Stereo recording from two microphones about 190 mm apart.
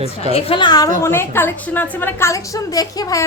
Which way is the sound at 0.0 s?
30° left (ahead or behind).